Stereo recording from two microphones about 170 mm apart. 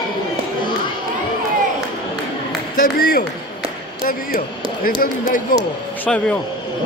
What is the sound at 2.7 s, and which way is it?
Speech, 60° left (ahead or behind).